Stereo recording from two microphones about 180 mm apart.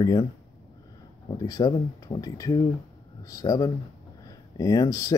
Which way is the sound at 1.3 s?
20° left (ahead or behind).